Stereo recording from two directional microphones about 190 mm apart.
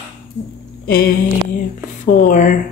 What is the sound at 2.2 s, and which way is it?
Speech, 45° left (ahead or behind).